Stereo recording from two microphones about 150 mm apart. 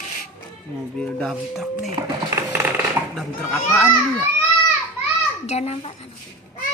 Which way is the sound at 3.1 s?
Centre (ahead or behind).